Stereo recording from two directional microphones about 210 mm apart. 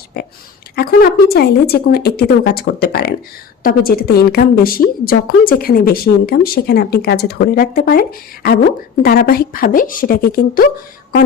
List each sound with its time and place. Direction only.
0.1 s a woman's voice: 50° left (ahead or behind)
9.0 s a woman's voice: 45° left (ahead or behind)